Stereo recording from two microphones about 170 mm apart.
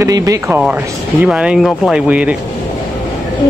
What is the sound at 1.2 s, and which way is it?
Speech, 5° right (ahead or behind).